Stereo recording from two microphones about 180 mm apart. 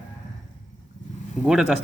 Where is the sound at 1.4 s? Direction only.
5° right (ahead or behind).